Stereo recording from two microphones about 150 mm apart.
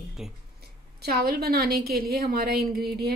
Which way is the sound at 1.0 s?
90° right.